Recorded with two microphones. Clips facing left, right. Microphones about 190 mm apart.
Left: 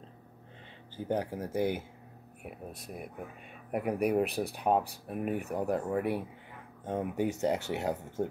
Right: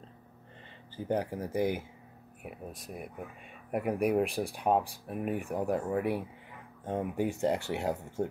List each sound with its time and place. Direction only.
0.9 s speech: 5° left (ahead or behind)